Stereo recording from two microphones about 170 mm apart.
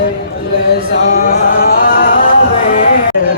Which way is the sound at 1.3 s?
55° left (ahead or behind).